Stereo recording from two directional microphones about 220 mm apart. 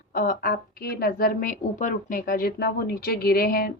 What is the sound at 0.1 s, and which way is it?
A woman's voice, 40° left (ahead or behind).